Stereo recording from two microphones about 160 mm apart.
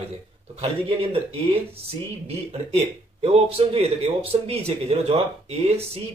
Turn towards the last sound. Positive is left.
turn(degrees=-40)  # may be behind; listen again after turning